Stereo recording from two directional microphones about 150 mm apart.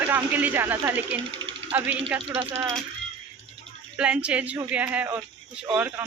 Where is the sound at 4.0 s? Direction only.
5° right (ahead or behind).